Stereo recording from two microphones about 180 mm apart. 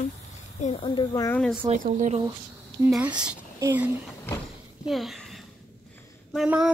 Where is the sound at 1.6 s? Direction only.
40° right (ahead or behind).